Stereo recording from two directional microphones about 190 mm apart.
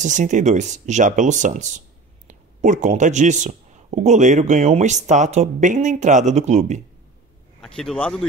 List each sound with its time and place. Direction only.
0.0 s speech: 40° right (ahead or behind)
7.6 s speech: 5° left (ahead or behind)